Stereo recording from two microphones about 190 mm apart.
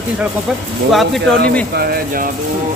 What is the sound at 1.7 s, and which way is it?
Speech, 55° right (ahead or behind).